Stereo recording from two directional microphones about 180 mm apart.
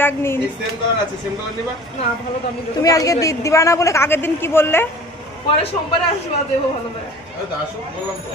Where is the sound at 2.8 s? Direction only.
20° left (ahead or behind).